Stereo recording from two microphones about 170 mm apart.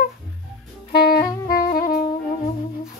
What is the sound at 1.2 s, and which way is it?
Saxophone, 20° left (ahead or behind).